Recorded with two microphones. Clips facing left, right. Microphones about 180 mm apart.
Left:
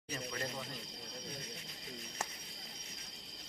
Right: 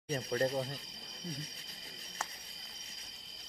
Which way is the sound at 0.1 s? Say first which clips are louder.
Right 9 dB; 40° right (ahead or behind).